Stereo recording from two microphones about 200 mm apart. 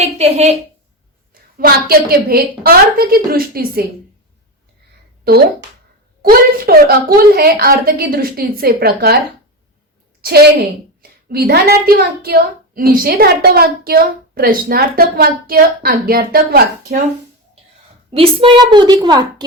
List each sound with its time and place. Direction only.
0.0 s a woman's voice: 30° right (ahead or behind)
1.3 s a woman's voice: 45° right (ahead or behind)
5.2 s a woman's voice: 55° right (ahead or behind)
11.3 s a woman's voice: 50° right (ahead or behind)
18.1 s a woman's voice: 30° right (ahead or behind)